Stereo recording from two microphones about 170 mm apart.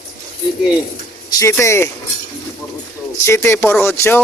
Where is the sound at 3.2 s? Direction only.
15° left (ahead or behind).